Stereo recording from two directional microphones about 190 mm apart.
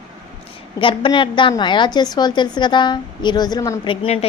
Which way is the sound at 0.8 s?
25° left (ahead or behind).